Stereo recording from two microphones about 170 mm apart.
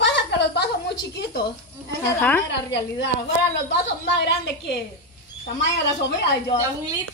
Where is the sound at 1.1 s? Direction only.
65° left (ahead or behind).